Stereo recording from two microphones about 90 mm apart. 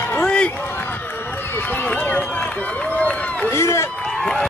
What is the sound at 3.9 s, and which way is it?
Run, 10° left (ahead or behind).